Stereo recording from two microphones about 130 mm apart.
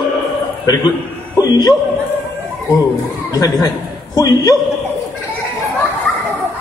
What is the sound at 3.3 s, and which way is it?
A man's voice, 30° left (ahead or behind).